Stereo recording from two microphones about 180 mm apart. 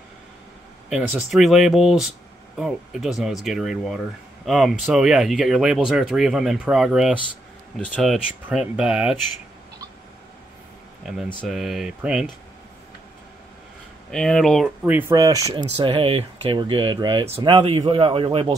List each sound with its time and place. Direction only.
0.8 s speech: centre (ahead or behind)
11.4 s speech: centre (ahead or behind)
14.1 s speech: centre (ahead or behind)
15.0 s speech: 20° right (ahead or behind)
15.5 s speech: 30° right (ahead or behind)